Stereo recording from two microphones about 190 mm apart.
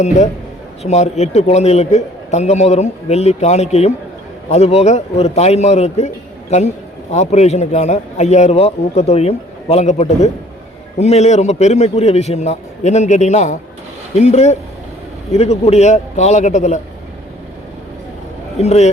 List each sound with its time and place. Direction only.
0.8 s a man's voice: 35° left (ahead or behind)
7.1 s a man's voice: 35° left (ahead or behind)
18.6 s a man's voice: 35° left (ahead or behind)